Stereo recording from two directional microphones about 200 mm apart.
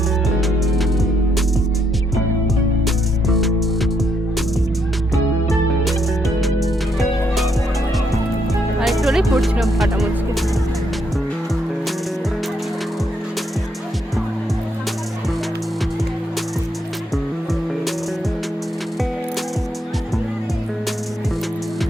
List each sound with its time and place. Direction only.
2.8 s music: centre (ahead or behind)
5.1 s music: centre (ahead or behind)
8.8 s music: centre (ahead or behind)